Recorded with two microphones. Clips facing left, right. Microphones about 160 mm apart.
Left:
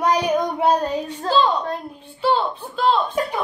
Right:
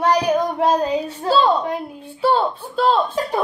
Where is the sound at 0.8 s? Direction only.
5° right (ahead or behind).